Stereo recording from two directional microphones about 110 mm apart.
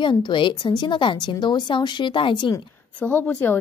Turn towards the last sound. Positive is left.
turn(degrees=15)  # may be behind; listen again after turning